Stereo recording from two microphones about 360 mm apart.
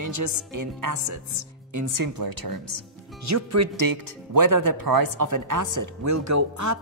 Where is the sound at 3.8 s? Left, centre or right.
Right.